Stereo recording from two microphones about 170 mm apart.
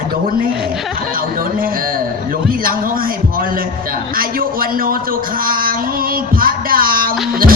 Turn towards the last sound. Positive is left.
turn(degrees=-60)  # may be behind; listen again after turning